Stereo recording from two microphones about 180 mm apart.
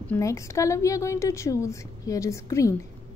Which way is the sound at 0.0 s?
15° left (ahead or behind).